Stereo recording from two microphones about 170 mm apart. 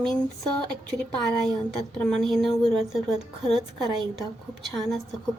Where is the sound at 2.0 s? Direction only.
Centre (ahead or behind).